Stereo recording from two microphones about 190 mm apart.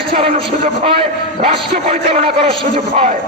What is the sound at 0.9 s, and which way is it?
Speech, 30° right (ahead or behind).